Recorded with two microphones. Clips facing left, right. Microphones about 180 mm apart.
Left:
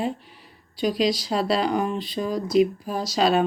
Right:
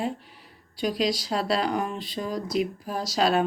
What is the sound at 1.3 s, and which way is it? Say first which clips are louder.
Speech: left 3 dB; centre (ahead or behind).